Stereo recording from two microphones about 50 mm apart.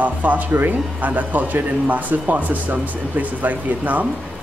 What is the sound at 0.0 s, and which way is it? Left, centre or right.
A man's voice, right.